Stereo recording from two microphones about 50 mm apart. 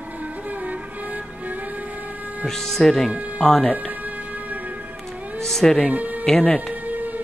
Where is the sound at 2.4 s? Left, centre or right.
Centre.